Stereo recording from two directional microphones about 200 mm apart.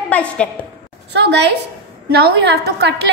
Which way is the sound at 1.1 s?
60° right (ahead or behind).